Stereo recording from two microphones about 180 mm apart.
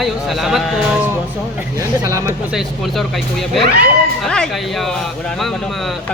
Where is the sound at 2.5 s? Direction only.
Centre (ahead or behind).